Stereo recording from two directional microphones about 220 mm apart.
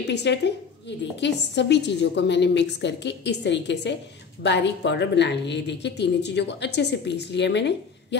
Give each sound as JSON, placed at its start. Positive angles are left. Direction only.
{"t": 0.1, "sound": "a woman's voice", "side_deg": 50}